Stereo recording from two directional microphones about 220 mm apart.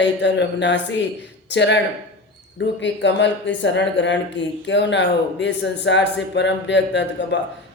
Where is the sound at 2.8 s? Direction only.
55° left (ahead or behind).